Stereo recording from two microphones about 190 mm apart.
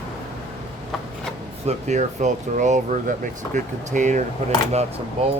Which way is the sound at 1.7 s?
35° right (ahead or behind).